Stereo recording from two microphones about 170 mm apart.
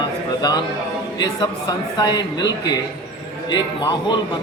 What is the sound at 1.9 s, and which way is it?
Speech, 25° left (ahead or behind).